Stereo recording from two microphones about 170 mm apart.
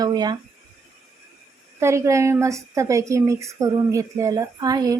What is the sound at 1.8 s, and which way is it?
A woman's voice, 15° right (ahead or behind).